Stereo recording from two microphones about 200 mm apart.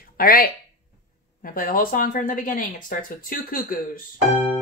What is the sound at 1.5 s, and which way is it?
Speech, 45° left (ahead or behind).